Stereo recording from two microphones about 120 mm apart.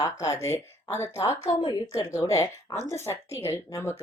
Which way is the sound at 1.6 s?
35° left (ahead or behind).